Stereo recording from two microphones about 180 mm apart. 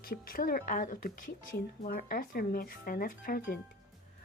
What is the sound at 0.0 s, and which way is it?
Speech, 55° left (ahead or behind).